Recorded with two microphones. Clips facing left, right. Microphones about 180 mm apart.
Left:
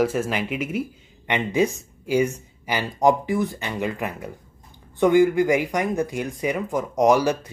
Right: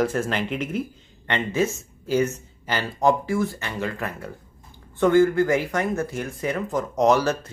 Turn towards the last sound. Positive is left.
turn(degrees=15)  # may be behind; listen again after turning